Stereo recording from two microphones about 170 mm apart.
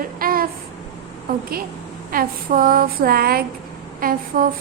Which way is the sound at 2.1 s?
60° right (ahead or behind).